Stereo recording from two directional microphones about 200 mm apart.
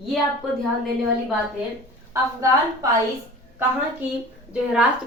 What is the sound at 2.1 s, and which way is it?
Speech, 15° right (ahead or behind).